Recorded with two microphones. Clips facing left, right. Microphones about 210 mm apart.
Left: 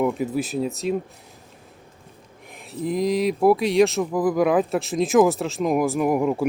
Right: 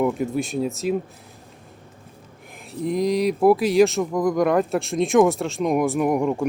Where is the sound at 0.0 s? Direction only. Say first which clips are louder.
Right 1 dB; centre (ahead or behind).